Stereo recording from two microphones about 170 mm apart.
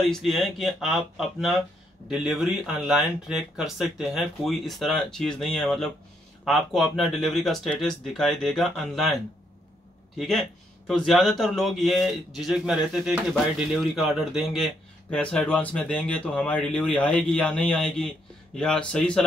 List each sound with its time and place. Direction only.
0.1 s a man's voice: centre (ahead or behind)